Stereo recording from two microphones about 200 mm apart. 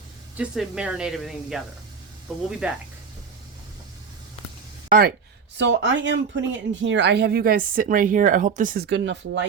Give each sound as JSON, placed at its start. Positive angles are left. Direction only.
{"t": 0.3, "sound": "speech", "side_deg": -5}
{"t": 4.9, "sound": "speech", "side_deg": -45}
{"t": 5.5, "sound": "speech", "side_deg": -65}